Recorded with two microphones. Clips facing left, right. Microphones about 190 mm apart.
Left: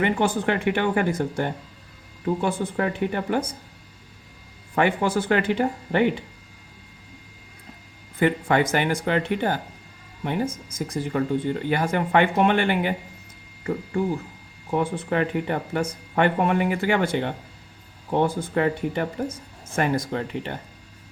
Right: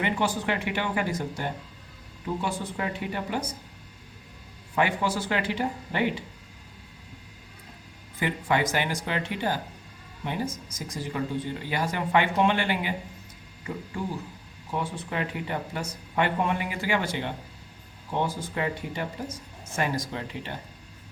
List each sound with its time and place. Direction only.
0.0 s speech: 55° left (ahead or behind)
4.7 s speech: 55° left (ahead or behind)
8.2 s speech: 55° left (ahead or behind)
14.7 s speech: 55° left (ahead or behind)